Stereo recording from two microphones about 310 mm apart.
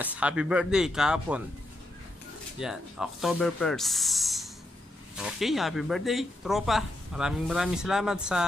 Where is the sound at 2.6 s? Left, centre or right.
Centre.